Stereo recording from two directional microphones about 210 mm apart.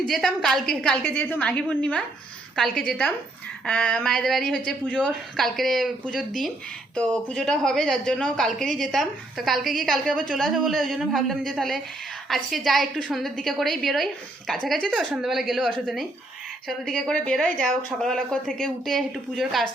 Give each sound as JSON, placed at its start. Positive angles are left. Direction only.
{"t": 0.0, "sound": "speech", "side_deg": 0}